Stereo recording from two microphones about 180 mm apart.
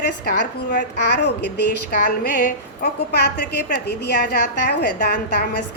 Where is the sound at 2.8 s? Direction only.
65° left (ahead or behind).